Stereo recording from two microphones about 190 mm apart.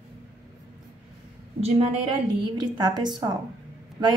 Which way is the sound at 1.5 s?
30° right (ahead or behind).